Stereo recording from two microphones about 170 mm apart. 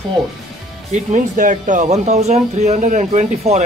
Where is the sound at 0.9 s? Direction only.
45° right (ahead or behind).